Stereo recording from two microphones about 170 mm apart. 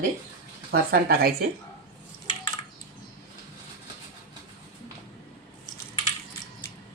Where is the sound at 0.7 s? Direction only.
65° right (ahead or behind).